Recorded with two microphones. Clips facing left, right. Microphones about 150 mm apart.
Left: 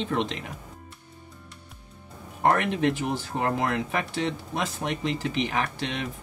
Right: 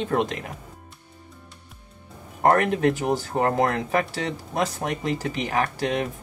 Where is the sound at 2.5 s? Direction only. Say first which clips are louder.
Right 4 dB; 40° right (ahead or behind).